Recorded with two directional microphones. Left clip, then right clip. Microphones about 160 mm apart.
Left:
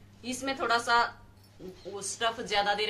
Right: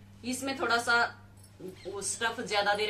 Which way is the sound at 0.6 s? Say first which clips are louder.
Left 1 dB; 5° right (ahead or behind).